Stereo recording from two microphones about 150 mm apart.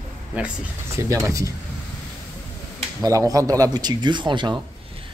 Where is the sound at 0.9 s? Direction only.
20° right (ahead or behind).